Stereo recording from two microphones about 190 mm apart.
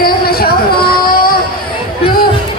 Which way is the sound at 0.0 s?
50° left (ahead or behind).